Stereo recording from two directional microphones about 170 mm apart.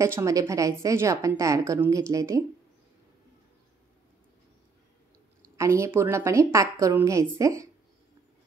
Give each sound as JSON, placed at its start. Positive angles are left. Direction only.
{"t": 0.0, "sound": "a woman's voice", "side_deg": -15}
{"t": 5.6, "sound": "a woman's voice", "side_deg": -15}